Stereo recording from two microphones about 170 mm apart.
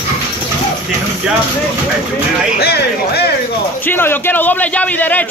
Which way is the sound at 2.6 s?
70° left (ahead or behind).